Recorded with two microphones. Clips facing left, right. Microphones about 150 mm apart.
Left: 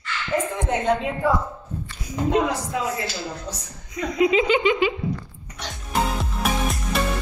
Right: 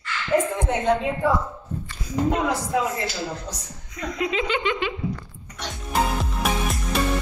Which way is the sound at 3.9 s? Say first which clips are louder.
Left 6 dB; 10° left (ahead or behind).